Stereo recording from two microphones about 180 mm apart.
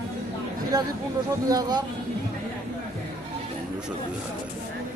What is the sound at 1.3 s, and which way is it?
Speech, 20° right (ahead or behind).